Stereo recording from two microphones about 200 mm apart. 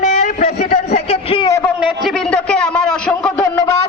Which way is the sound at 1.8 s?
Centre (ahead or behind).